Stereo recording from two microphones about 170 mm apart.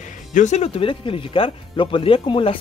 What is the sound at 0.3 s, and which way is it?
Speech, 45° left (ahead or behind).